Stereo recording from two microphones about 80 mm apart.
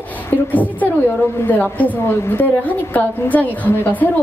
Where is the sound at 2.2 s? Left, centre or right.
Left.